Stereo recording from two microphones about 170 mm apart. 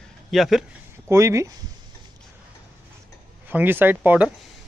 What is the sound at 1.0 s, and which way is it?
Speech, 15° right (ahead or behind).